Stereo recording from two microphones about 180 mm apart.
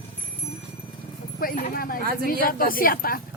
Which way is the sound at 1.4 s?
55° left (ahead or behind).